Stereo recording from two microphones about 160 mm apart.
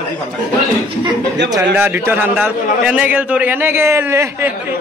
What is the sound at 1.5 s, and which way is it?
A man's voice, 15° right (ahead or behind).